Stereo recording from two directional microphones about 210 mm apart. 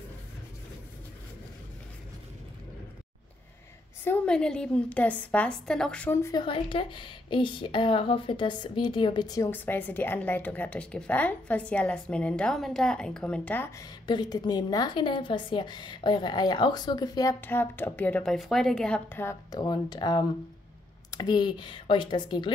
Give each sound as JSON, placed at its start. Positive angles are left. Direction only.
{"t": 4.0, "sound": "a woman's voice", "side_deg": 10}
{"t": 14.0, "sound": "a woman's voice", "side_deg": 20}